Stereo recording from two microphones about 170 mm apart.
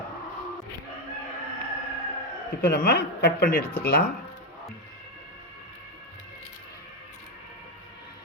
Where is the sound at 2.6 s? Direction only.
70° left (ahead or behind).